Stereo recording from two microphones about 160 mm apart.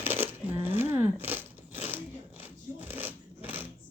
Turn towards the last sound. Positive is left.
turn(degrees=-10)  # may be behind; listen again after turning